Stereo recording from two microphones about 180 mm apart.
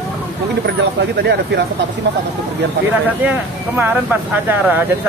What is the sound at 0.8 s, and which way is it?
Speech, 70° right (ahead or behind).